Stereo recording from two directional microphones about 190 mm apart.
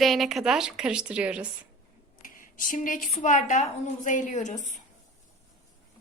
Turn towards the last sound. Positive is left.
turn(degrees=40)  # may be behind; listen again after turning